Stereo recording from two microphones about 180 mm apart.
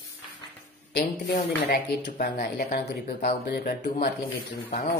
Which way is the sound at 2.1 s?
55° left (ahead or behind).